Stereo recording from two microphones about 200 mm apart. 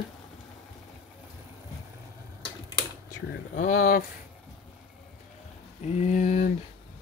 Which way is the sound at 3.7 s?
50° left (ahead or behind).